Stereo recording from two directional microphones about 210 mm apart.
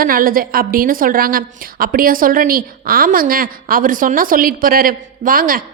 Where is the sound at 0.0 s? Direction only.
45° right (ahead or behind).